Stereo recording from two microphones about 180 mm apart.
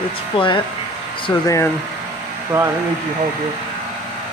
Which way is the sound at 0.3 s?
25° left (ahead or behind).